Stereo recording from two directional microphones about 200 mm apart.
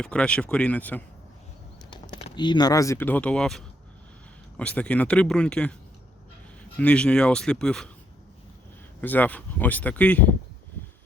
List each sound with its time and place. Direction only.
0.0 s speech: 5° left (ahead or behind)
1.9 s typing: 25° left (ahead or behind)
2.3 s speech: 20° left (ahead or behind); by 5.7 s 5° left (ahead or behind)
6.7 s speech: 5° left (ahead or behind)
9.0 s speech: 10° left (ahead or behind)